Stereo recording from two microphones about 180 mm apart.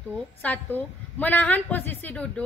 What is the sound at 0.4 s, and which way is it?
A woman's voice, 10° left (ahead or behind).